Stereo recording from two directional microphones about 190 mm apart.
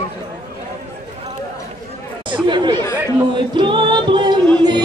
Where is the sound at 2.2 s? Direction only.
25° right (ahead or behind).